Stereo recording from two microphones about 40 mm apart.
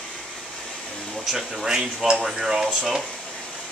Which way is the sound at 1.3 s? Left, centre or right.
Centre.